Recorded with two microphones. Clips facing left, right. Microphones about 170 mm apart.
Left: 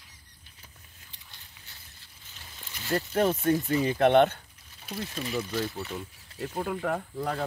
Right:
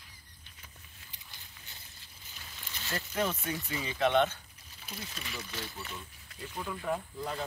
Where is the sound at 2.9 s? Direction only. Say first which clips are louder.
Left 8 dB; 45° left (ahead or behind).